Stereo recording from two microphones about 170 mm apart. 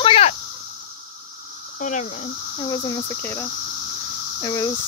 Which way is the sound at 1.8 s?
45° left (ahead or behind).